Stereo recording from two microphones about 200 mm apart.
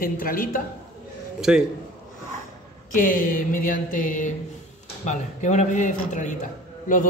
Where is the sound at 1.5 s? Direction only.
5° right (ahead or behind).